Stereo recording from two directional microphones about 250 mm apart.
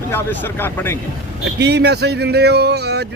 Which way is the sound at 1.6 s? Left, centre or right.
Right.